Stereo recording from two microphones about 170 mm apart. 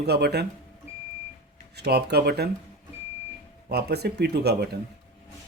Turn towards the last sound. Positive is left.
turn(degrees=-75)  # may be behind; listen again after turning